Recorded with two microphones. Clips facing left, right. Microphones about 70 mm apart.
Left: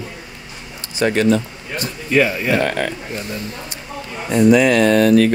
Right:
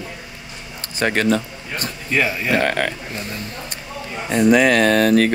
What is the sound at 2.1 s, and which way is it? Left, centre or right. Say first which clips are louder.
Speech: left 4 dB; centre.